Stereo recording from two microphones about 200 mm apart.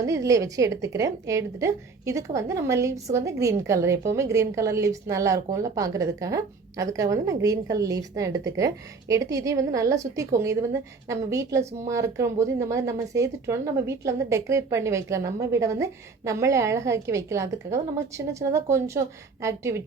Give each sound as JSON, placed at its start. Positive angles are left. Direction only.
{"t": 0.0, "sound": "a woman's voice", "side_deg": -15}